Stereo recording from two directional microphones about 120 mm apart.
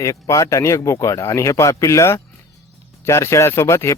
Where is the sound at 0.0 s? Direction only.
25° left (ahead or behind).